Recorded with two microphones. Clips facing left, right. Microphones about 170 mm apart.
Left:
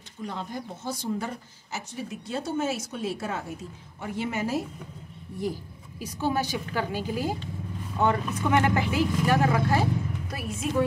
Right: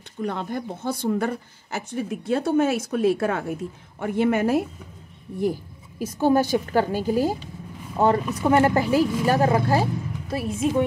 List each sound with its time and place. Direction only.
0.2 s a woman's voice: 60° right (ahead or behind); by 10.7 s 25° right (ahead or behind)